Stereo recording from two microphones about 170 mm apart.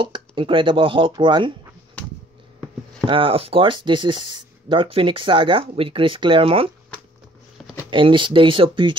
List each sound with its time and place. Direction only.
0.0 s speech: 30° right (ahead or behind)
3.1 s speech: 30° right (ahead or behind)
7.9 s speech: 30° right (ahead or behind)